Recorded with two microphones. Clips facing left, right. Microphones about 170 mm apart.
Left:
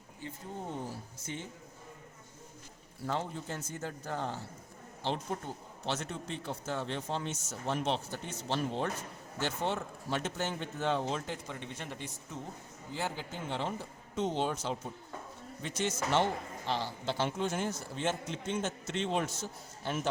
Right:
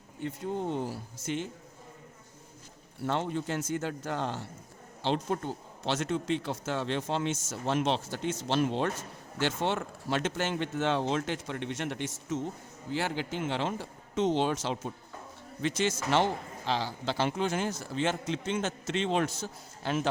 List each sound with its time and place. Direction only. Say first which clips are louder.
0.2 s a man's voice: right 9 dB; 75° right (ahead or behind); by 1.5 s 90° right
3.0 s a man's voice: right 5 dB; 70° right (ahead or behind); by 20.0 s 90° right